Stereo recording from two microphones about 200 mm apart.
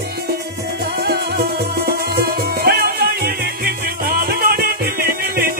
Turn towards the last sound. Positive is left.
turn(degrees=-50)  # may be behind; listen again after turning